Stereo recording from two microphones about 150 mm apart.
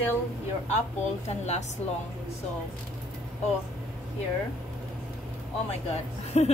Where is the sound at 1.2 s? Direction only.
50° left (ahead or behind).